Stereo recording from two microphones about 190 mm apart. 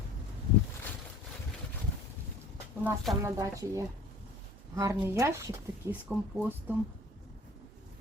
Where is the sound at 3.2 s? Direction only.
15° right (ahead or behind).